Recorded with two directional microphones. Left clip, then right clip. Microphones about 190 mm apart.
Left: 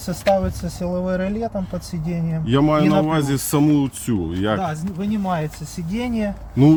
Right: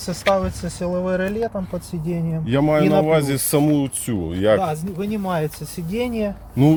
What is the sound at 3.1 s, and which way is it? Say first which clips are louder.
Speech: right 3 dB; 10° right (ahead or behind).